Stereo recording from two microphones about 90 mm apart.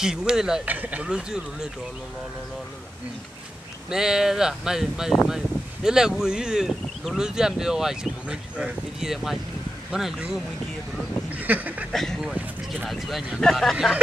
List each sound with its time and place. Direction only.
0.0 s speech: 5° right (ahead or behind)
0.7 s speech: 20° right (ahead or behind)
3.9 s speech: 5° right (ahead or behind)
11.2 s duck: 20° right (ahead or behind)
11.9 s speech: 5° left (ahead or behind)